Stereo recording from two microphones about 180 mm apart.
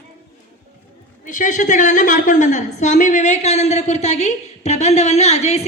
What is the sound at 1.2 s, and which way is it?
A woman's voice, 45° left (ahead or behind).